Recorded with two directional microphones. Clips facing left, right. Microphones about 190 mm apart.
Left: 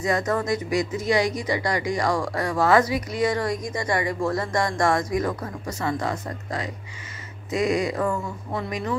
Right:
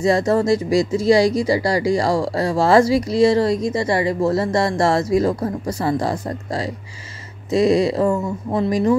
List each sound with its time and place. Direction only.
0.0 s speech: 30° right (ahead or behind)